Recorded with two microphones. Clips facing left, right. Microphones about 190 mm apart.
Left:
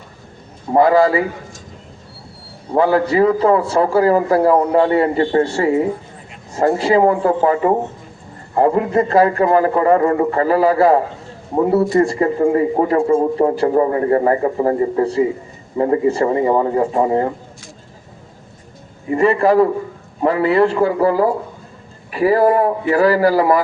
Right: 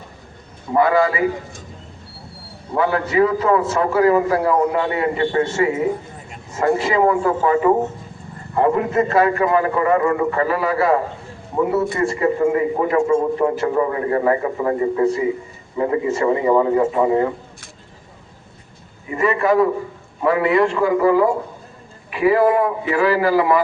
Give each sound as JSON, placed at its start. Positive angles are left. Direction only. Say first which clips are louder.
{"t": 0.7, "sound": "a man's voice", "louder": "left 4 dB", "side_deg": 35}
{"t": 2.7, "sound": "a man's voice", "louder": "left 4 dB", "side_deg": 35}
{"t": 8.5, "sound": "a man's voice", "louder": "left 2 dB", "side_deg": 35}
{"t": 19.1, "sound": "a man's voice", "louder": "left 4 dB", "side_deg": 35}